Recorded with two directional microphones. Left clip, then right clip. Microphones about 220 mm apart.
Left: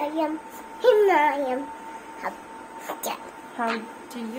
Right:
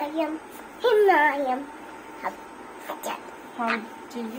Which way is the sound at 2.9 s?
25° left (ahead or behind).